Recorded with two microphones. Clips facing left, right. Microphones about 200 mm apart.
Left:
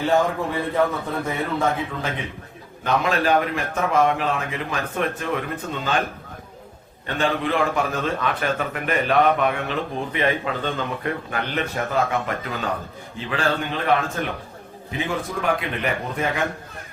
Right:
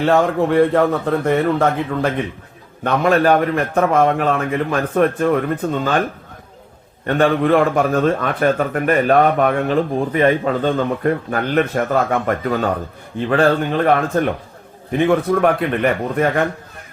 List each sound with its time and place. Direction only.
0.0 s a man's voice: 75° right (ahead or behind)
2.8 s a man's voice: 55° right (ahead or behind)
7.1 s a man's voice: 55° right (ahead or behind)
14.9 s a man's voice: 65° right (ahead or behind)